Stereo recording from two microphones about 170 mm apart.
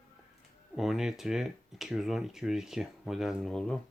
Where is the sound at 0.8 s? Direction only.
Centre (ahead or behind).